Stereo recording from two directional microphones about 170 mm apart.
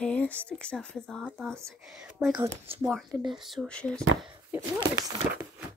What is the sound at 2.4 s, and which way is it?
Speech, 35° right (ahead or behind).